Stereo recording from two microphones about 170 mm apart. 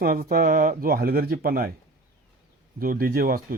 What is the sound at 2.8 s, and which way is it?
Speech, 60° right (ahead or behind).